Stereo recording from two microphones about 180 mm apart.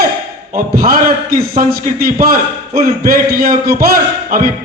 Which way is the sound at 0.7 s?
55° right (ahead or behind).